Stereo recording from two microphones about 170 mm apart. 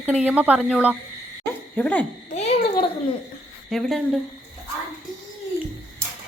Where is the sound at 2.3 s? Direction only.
40° left (ahead or behind).